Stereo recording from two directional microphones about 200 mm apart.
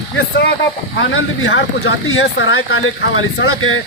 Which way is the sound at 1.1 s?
75° left (ahead or behind).